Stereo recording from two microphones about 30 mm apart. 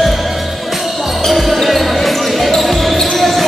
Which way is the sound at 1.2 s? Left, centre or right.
Centre.